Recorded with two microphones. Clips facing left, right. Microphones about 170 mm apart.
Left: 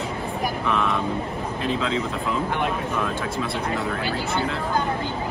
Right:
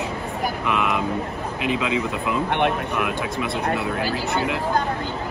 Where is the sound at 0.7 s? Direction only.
15° right (ahead or behind).